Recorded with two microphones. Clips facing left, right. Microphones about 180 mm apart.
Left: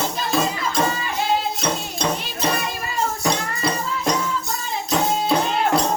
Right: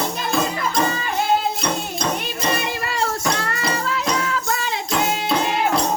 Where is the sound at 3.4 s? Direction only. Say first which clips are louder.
Even; 75° right (ahead or behind).